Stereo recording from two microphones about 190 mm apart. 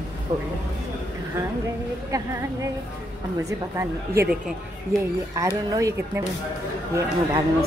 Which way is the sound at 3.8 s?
15° right (ahead or behind).